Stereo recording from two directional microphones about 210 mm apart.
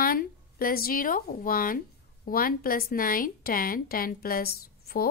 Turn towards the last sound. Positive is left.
turn(degrees=45)  # may be behind; listen again after turning